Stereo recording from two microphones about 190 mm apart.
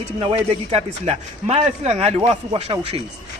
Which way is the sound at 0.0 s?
30° right (ahead or behind).